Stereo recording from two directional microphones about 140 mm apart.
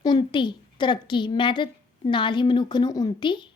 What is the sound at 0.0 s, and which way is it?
A woman's voice, 35° left (ahead or behind).